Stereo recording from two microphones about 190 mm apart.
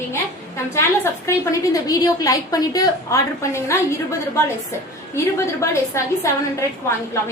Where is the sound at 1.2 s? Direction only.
15° left (ahead or behind).